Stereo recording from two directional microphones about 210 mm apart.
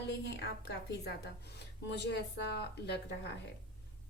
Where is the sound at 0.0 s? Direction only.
55° left (ahead or behind).